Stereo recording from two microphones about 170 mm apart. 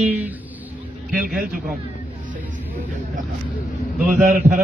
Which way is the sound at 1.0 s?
55° right (ahead or behind).